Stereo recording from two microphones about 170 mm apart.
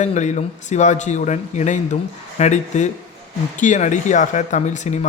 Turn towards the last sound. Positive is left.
turn(degrees=45)  # may be behind; listen again after turning